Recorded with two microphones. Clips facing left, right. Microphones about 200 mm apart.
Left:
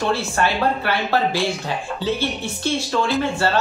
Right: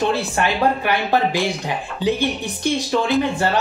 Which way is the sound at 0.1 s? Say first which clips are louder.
Even; 15° right (ahead or behind).